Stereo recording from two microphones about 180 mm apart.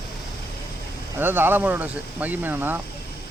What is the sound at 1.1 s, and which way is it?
Speech, 10° right (ahead or behind).